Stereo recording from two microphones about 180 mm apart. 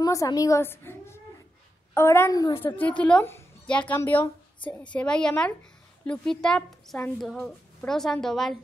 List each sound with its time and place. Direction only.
0.0 s a woman's voice: 20° left (ahead or behind); by 8.5 s centre (ahead or behind)